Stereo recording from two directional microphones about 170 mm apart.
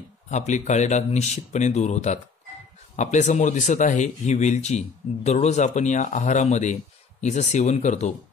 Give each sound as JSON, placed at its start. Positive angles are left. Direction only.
{"t": 0.3, "sound": "speech", "side_deg": 45}